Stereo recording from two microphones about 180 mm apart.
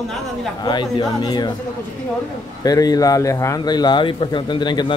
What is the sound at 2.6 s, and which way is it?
Speech, 20° left (ahead or behind).